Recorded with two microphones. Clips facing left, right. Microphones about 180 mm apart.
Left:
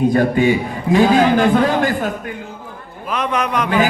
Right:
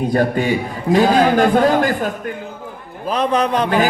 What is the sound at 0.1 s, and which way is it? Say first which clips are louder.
Speech: left 2 dB; 40° right (ahead or behind).